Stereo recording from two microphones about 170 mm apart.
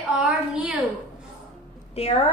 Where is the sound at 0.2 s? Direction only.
5° right (ahead or behind).